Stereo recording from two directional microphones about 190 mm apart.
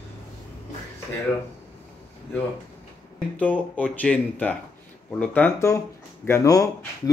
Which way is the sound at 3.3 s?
10° left (ahead or behind).